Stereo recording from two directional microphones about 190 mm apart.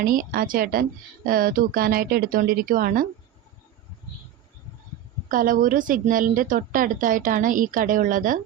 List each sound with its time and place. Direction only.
0.0 s speech: 50° right (ahead or behind)
5.3 s speech: 45° right (ahead or behind)